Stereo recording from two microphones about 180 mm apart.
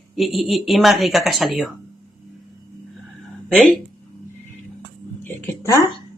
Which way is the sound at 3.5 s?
5° left (ahead or behind).